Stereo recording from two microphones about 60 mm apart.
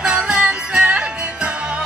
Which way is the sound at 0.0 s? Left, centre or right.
Centre.